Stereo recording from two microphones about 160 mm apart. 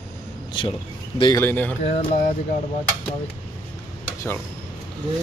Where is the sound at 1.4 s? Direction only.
10° left (ahead or behind).